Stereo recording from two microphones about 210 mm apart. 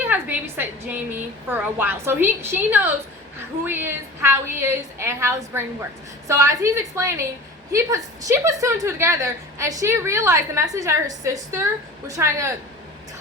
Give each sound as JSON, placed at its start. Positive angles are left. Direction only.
{"t": 0.1, "sound": "a woman's voice", "side_deg": -10}